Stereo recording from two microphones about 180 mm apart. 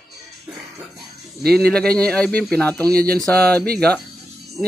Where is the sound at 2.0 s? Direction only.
5° left (ahead or behind).